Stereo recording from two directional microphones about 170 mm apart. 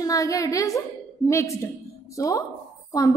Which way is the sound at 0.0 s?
20° left (ahead or behind).